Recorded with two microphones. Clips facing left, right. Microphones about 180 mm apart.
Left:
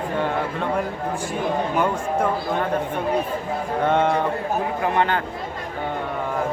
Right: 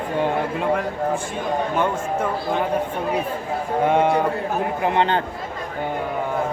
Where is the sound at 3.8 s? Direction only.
5° right (ahead or behind).